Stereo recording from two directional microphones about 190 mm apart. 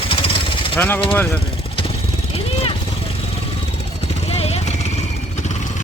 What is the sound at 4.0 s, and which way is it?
Vehicle, 35° left (ahead or behind).